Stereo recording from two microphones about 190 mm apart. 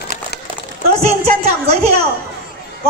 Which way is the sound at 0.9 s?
35° right (ahead or behind).